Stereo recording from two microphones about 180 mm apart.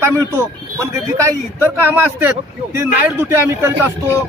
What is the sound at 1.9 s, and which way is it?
Speech, 10° right (ahead or behind).